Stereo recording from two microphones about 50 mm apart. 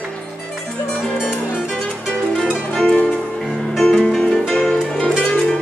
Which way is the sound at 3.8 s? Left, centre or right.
Centre.